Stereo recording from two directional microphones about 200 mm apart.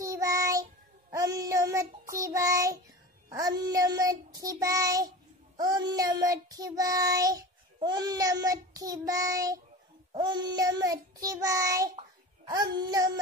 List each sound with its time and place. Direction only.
0.0 s child singing: 15° right (ahead or behind)